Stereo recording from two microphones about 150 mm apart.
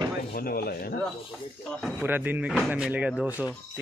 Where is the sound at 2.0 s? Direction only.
15° right (ahead or behind).